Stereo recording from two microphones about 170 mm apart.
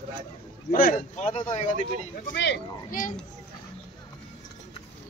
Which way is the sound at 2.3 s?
90° left.